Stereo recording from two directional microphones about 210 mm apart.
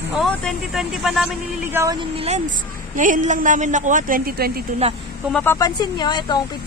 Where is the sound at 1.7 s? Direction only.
10° right (ahead or behind).